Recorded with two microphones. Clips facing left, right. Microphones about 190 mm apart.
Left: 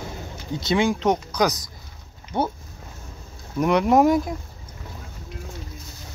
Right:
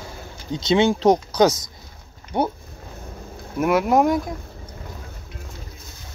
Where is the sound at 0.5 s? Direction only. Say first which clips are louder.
Right 3 dB; 20° right (ahead or behind).